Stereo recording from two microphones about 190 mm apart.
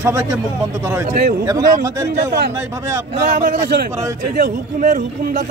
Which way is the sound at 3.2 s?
45° right (ahead or behind).